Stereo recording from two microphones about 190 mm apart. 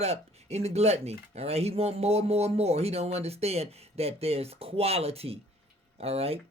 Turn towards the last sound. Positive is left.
turn(degrees=-30)  # may be behind; listen again after turning